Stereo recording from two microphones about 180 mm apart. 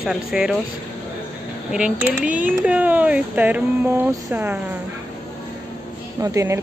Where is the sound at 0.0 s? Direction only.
5° right (ahead or behind).